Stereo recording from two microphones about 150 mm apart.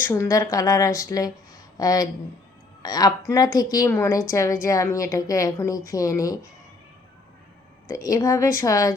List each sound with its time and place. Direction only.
0.1 s a woman's voice: 20° left (ahead or behind)
7.9 s a woman's voice: 25° left (ahead or behind)